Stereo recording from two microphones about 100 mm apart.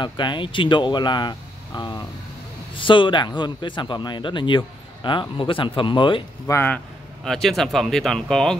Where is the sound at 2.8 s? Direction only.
55° left (ahead or behind).